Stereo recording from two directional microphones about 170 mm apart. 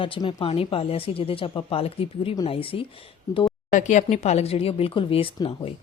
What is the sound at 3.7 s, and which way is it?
A woman's voice, 45° left (ahead or behind).